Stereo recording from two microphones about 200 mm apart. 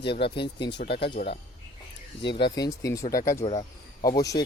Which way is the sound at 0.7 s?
55° left (ahead or behind).